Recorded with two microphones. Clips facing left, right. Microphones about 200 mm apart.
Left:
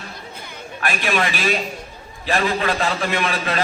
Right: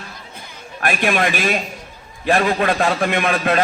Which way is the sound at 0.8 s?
50° right (ahead or behind).